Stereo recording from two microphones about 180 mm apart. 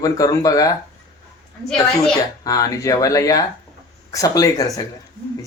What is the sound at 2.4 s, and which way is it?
Speech, 20° left (ahead or behind).